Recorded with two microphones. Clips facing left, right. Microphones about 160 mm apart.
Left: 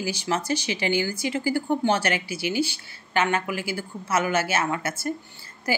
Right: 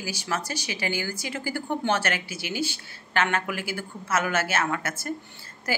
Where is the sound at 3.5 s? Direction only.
50° right (ahead or behind).